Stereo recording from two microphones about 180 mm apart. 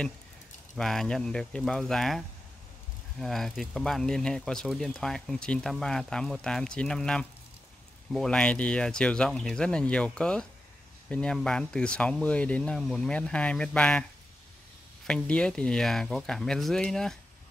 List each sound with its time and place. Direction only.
0.7 s speech: 5° left (ahead or behind)
15.0 s speech: 5° left (ahead or behind)